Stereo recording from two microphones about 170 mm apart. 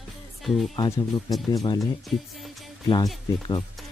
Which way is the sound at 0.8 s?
20° left (ahead or behind).